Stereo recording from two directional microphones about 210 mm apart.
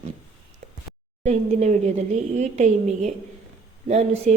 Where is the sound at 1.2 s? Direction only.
30° right (ahead or behind).